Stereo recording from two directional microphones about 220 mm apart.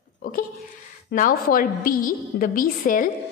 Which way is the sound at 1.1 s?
45° left (ahead or behind).